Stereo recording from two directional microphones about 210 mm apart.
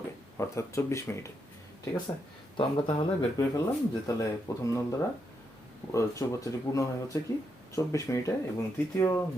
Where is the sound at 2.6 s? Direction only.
25° left (ahead or behind).